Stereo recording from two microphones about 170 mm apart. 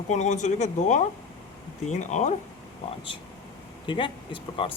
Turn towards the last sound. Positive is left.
turn(degrees=30)  # may be behind; listen again after turning